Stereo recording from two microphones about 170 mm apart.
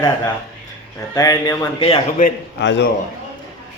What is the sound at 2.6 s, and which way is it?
Speech, 90° left.